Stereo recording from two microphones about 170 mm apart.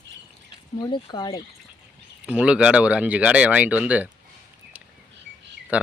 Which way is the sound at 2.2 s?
5° right (ahead or behind).